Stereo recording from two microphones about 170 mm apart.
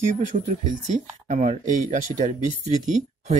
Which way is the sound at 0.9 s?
45° right (ahead or behind).